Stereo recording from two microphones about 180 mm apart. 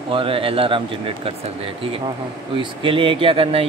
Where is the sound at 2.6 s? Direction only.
30° right (ahead or behind).